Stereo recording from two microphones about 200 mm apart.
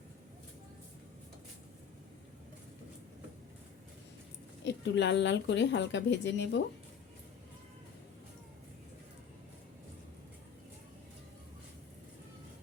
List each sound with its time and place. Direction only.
4.6 s a woman's voice: 60° left (ahead or behind)